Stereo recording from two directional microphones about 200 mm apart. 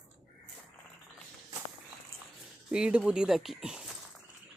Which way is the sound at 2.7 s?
5° right (ahead or behind).